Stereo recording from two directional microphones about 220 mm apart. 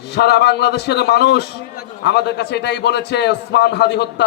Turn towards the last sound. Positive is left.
turn(degrees=50)  # may be behind; listen again after turning